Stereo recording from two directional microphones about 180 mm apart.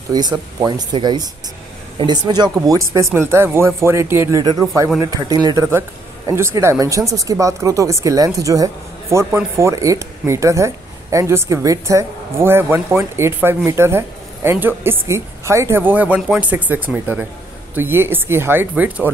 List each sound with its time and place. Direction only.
0.1 s a woman's voice: 20° right (ahead or behind)